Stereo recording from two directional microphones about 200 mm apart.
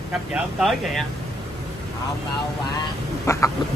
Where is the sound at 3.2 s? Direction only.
15° left (ahead or behind).